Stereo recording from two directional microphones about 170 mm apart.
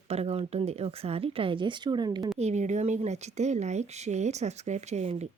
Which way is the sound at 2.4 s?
45° right (ahead or behind).